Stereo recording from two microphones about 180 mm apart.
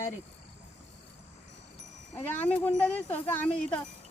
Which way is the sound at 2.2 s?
10° left (ahead or behind).